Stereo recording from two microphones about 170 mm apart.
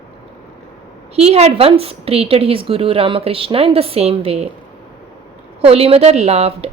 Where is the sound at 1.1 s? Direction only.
40° right (ahead or behind).